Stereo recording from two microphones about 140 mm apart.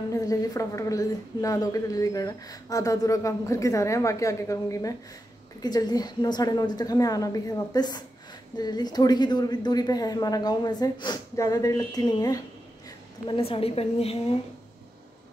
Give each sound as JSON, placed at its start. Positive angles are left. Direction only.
{"t": 0.1, "sound": "a woman's voice", "side_deg": 25}
{"t": 13.3, "sound": "a woman's voice", "side_deg": 45}